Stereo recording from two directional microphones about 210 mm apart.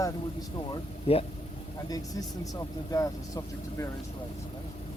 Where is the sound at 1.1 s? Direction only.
30° left (ahead or behind).